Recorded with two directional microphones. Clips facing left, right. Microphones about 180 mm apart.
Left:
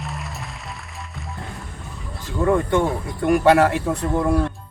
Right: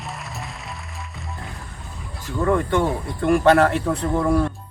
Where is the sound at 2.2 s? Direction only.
15° left (ahead or behind).